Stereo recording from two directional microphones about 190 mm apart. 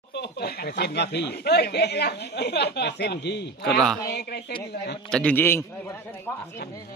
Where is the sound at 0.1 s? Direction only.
60° left (ahead or behind).